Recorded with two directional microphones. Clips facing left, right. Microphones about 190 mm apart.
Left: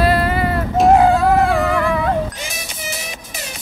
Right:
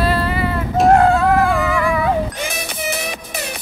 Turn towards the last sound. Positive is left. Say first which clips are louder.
# right 5 dB
turn(degrees=-60)  # may be behind; listen again after turning